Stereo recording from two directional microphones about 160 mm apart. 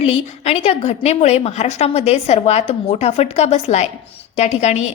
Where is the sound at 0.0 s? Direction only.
40° left (ahead or behind).